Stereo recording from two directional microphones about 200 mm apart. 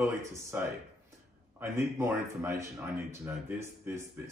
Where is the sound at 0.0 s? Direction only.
15° right (ahead or behind).